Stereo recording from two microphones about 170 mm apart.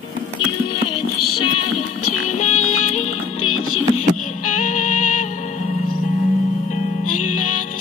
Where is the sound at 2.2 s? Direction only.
45° left (ahead or behind).